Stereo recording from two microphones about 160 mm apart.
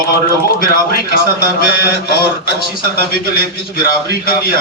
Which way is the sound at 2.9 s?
70° left (ahead or behind).